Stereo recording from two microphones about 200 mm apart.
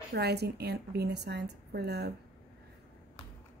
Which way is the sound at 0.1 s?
55° right (ahead or behind).